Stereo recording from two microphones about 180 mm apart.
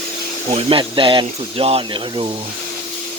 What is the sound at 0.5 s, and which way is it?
Speech, 30° right (ahead or behind).